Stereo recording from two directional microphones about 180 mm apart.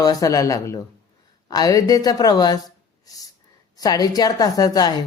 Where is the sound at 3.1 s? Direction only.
20° left (ahead or behind).